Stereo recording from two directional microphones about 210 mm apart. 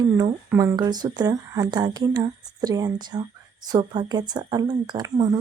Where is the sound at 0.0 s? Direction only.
20° right (ahead or behind).